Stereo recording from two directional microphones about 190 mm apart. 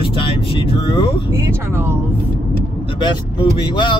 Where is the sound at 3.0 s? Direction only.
25° left (ahead or behind).